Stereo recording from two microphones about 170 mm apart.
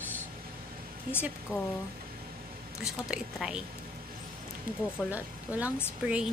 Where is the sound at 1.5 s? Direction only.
15° left (ahead or behind).